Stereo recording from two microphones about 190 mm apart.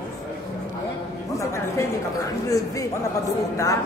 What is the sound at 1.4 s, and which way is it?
Speech, 15° left (ahead or behind).